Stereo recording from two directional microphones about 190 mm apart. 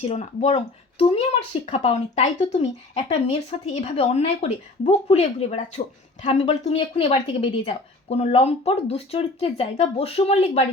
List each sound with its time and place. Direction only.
0.0 s a woman's voice: 35° left (ahead or behind)